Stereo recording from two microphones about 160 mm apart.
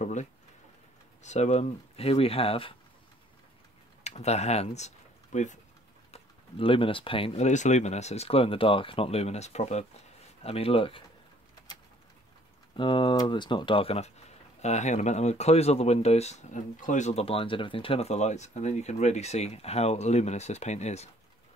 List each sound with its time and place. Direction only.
0.0 s speech: 50° left (ahead or behind)
4.0 s speech: 45° left (ahead or behind)
6.1 s speech: 35° left (ahead or behind)
12.7 s speech: 30° left (ahead or behind)